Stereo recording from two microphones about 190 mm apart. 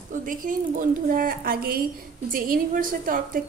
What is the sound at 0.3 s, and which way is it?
A woman's voice, 45° right (ahead or behind).